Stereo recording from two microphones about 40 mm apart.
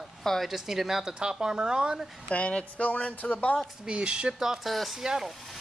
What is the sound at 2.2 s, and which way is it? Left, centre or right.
Speech, left.